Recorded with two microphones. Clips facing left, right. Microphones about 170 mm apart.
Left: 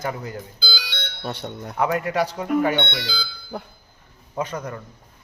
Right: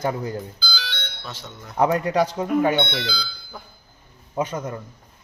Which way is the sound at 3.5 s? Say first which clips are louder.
Left 9 dB; 65° left (ahead or behind).